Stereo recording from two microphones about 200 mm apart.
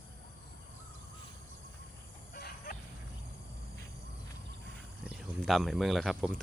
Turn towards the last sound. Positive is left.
turn(degrees=0)  # may be behind; listen again after turning